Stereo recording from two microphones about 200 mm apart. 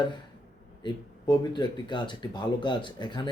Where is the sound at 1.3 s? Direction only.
20° left (ahead or behind).